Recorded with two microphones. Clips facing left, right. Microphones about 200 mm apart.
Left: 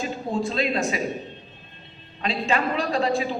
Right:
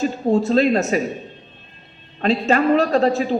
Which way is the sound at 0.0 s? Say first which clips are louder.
Right 8 dB; 40° right (ahead or behind).